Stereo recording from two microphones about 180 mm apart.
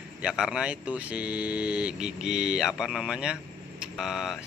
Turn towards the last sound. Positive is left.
turn(degrees=0)  # may be behind; listen again after turning